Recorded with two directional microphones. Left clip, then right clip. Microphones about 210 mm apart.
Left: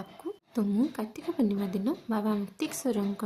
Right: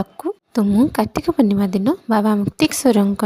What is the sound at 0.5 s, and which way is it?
A woman's voice, 40° right (ahead or behind).